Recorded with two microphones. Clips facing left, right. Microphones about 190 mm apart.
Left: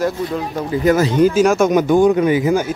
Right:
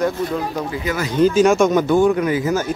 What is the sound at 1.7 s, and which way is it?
Speech, 15° left (ahead or behind).